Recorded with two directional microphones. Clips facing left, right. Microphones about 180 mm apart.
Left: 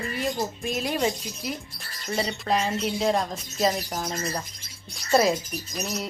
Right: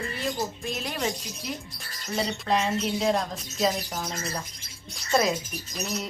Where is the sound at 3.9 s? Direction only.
15° left (ahead or behind).